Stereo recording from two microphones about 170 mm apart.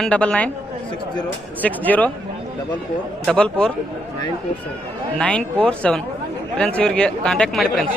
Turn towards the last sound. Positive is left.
turn(degrees=5)  # may be behind; listen again after turning